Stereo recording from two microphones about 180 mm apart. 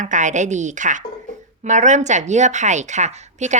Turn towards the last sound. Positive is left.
turn(degrees=-40)  # may be behind; listen again after turning